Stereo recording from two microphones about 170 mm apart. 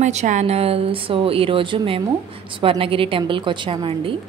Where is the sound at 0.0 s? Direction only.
45° right (ahead or behind).